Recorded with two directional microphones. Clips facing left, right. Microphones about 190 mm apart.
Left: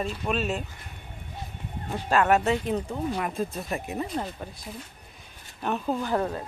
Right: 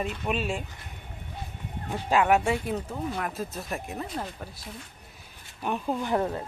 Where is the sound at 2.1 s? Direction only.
15° right (ahead or behind).